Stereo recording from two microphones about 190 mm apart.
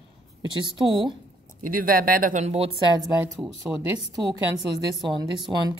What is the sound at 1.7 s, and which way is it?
Speech, 50° right (ahead or behind).